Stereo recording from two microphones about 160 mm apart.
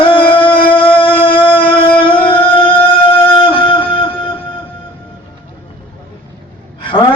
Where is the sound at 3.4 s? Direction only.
30° left (ahead or behind).